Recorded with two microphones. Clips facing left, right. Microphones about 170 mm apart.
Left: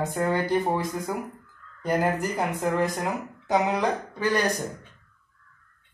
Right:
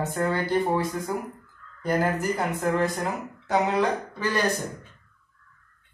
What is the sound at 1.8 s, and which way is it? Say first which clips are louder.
Speech: even; 15° left (ahead or behind).